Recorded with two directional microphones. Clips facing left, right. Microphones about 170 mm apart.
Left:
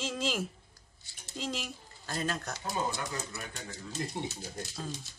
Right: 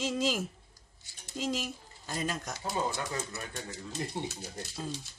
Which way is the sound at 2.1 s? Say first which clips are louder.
Even; 10° right (ahead or behind).